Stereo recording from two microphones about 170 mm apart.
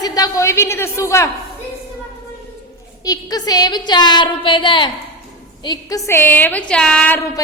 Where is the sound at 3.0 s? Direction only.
20° left (ahead or behind).